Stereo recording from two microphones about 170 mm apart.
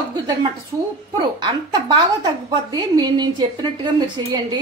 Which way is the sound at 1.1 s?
25° right (ahead or behind).